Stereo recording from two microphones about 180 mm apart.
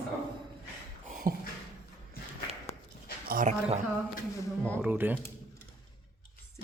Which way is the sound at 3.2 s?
50° right (ahead or behind).